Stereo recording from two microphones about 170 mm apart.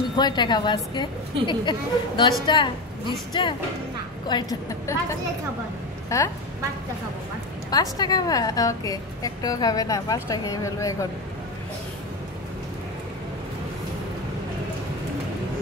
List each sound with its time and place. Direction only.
0.1 s a woman's voice: 25° left (ahead or behind)
6.0 s a woman's voice: 20° left (ahead or behind)
7.7 s a woman's voice: 25° left (ahead or behind)